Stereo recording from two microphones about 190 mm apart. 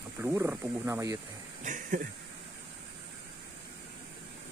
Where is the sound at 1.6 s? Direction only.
45° right (ahead or behind).